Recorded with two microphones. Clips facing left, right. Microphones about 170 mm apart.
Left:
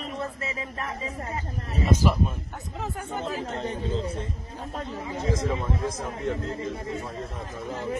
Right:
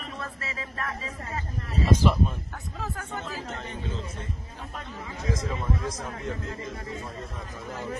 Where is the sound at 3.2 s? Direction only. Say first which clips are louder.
Left 8 dB; 35° left (ahead or behind).